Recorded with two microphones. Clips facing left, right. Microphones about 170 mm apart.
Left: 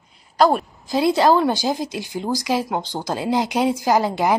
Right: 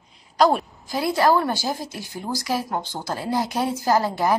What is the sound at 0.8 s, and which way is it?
A woman's voice, 25° left (ahead or behind).